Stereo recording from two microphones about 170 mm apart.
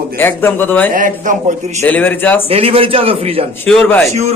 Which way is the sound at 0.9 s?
50° right (ahead or behind).